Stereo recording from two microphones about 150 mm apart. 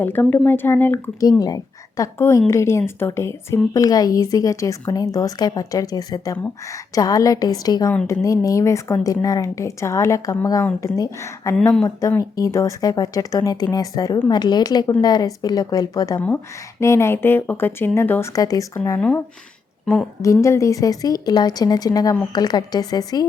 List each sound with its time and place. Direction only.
0.0 s speech: 10° left (ahead or behind)
1.4 s a woman's voice: 25° left (ahead or behind)
11.5 s speech: 5° left (ahead or behind)
11.9 s speech: 20° left (ahead or behind)
19.8 s a woman's voice: 5° left (ahead or behind)
20.2 s speech: 20° left (ahead or behind)